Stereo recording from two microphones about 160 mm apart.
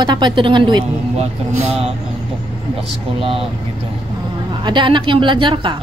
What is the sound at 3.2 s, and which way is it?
Speech, 35° right (ahead or behind).